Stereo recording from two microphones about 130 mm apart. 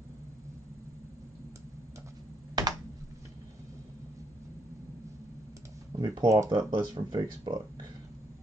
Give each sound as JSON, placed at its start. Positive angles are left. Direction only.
{"t": 2.6, "sound": "computer keyboard", "side_deg": -30}
{"t": 5.9, "sound": "speech", "side_deg": -35}